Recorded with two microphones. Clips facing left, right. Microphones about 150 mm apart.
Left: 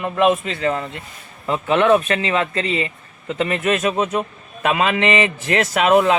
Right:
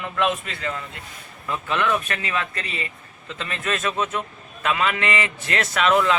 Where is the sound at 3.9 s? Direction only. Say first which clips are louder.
Left 5 dB; 40° left (ahead or behind).